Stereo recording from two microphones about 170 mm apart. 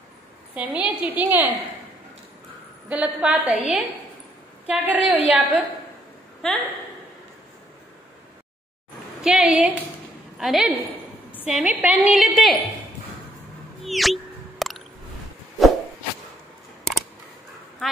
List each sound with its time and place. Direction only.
0.6 s a woman's voice: 10° right (ahead or behind)
2.9 s a woman's voice: 5° right (ahead or behind)
9.2 s a woman's voice: 5° right (ahead or behind)
13.8 s a sound: centre (ahead or behind)